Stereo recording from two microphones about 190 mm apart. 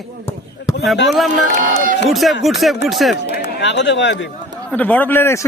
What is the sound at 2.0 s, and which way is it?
Speech, centre (ahead or behind).